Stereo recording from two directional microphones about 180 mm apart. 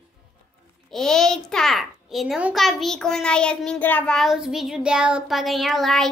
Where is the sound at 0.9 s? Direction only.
Centre (ahead or behind).